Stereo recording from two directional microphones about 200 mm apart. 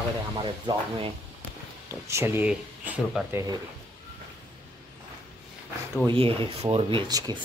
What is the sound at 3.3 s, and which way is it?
Speech, 15° right (ahead or behind).